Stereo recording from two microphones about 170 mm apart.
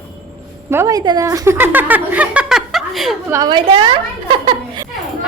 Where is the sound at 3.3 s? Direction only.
20° right (ahead or behind).